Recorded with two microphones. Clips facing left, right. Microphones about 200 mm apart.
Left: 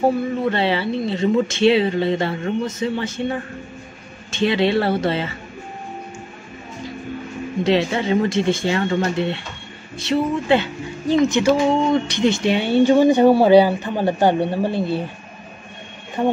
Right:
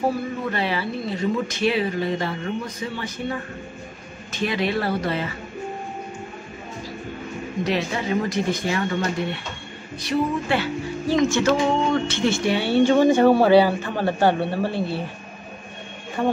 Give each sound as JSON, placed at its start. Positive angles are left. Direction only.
{"t": 0.0, "sound": "speech", "side_deg": 30}
{"t": 7.6, "sound": "speech", "side_deg": 30}
{"t": 16.2, "sound": "speech", "side_deg": 15}